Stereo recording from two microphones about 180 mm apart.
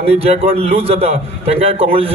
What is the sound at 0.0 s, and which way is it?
A man's voice, 35° right (ahead or behind).